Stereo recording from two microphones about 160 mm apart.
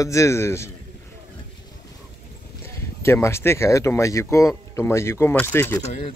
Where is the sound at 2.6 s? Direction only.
15° left (ahead or behind).